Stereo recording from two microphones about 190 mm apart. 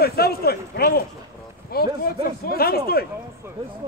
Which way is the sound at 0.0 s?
55° left (ahead or behind).